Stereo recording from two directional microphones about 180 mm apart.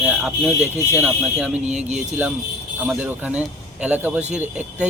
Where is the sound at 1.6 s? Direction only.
40° right (ahead or behind).